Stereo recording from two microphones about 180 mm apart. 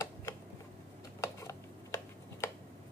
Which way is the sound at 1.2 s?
15° left (ahead or behind).